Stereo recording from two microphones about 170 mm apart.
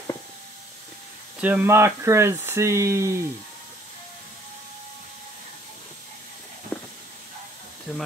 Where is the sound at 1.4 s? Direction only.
10° right (ahead or behind).